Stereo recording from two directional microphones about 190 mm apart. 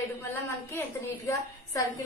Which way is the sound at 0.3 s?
10° left (ahead or behind).